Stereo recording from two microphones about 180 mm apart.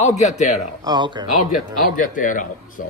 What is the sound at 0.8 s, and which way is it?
Speech, 25° right (ahead or behind).